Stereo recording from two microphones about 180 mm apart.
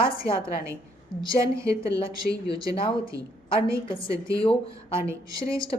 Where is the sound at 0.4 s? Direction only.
15° right (ahead or behind).